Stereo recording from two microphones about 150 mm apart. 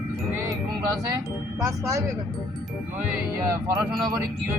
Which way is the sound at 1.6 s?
20° right (ahead or behind).